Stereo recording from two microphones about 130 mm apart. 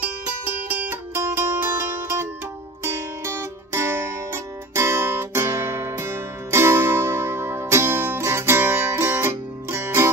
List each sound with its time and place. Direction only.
0.8 s music: 15° right (ahead or behind)